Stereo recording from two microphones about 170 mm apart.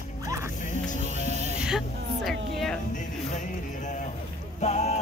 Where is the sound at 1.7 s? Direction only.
Centre (ahead or behind).